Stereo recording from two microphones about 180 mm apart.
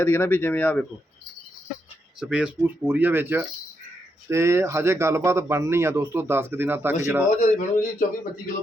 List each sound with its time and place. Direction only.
0.0 s speech: 10° left (ahead or behind)
2.2 s speech: 5° right (ahead or behind)
7.3 s a man's voice: 40° left (ahead or behind)